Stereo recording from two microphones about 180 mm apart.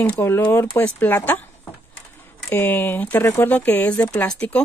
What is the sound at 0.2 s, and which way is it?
Speech, 10° left (ahead or behind).